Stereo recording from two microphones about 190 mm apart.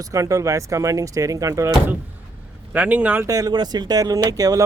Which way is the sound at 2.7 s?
5° right (ahead or behind).